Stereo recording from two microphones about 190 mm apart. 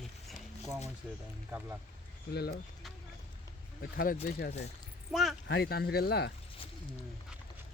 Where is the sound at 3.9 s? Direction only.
50° left (ahead or behind).